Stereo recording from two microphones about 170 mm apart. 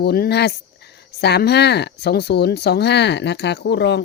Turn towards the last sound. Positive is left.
turn(degrees=90)